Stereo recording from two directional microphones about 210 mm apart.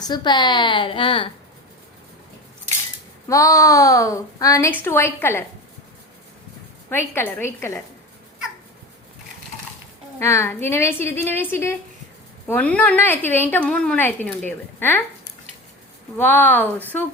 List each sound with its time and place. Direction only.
0.0 s a woman's voice: 20° left (ahead or behind)
3.2 s a woman's voice: 15° left (ahead or behind)
6.9 s a woman's voice: 10° left (ahead or behind)
10.2 s a woman's voice: 15° left (ahead or behind)
16.1 s a woman's voice: 10° left (ahead or behind)